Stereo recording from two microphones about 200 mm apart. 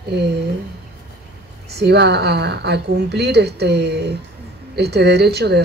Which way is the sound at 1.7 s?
55° right (ahead or behind).